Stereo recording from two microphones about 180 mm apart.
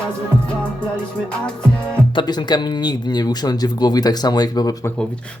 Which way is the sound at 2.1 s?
25° left (ahead or behind).